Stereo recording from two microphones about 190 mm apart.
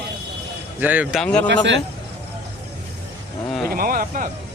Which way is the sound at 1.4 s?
75° right (ahead or behind).